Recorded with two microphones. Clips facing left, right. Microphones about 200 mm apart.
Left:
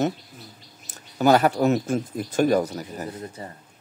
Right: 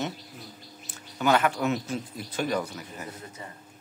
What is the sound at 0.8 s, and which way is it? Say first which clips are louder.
Speech: left 7 dB; 40° left (ahead or behind).